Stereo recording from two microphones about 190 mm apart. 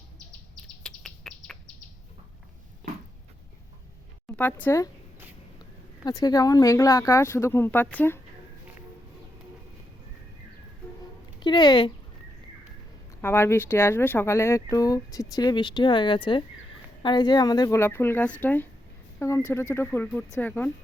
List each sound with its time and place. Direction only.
0.8 s chirp: 5° left (ahead or behind)
2.8 s a sound: centre (ahead or behind)
4.4 s speech: 10° left (ahead or behind)
6.1 s speech: 20° left (ahead or behind)
11.3 s speech: 25° left (ahead or behind)
13.2 s speech: 10° left (ahead or behind)